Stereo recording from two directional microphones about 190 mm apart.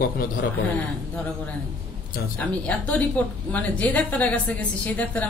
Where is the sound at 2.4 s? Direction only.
5° left (ahead or behind).